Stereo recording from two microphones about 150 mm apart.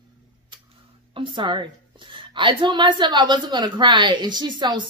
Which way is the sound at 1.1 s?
35° right (ahead or behind).